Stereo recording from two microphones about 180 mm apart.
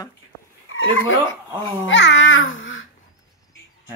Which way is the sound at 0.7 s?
90° left.